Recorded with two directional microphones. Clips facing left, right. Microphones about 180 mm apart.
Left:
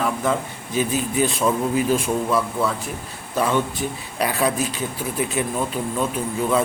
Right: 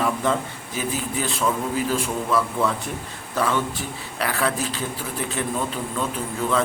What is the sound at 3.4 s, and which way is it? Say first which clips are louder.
A man's voice: left 3 dB; 15° left (ahead or behind).